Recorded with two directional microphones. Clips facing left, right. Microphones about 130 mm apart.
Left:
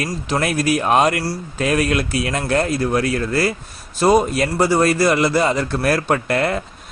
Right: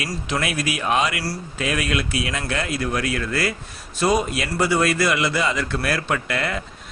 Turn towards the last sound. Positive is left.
turn(degrees=45)  # may be behind; listen again after turning